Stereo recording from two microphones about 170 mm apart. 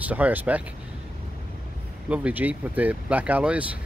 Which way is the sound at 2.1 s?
10° right (ahead or behind).